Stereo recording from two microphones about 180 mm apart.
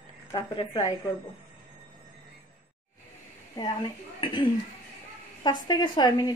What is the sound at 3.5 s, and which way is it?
Speech, 25° left (ahead or behind).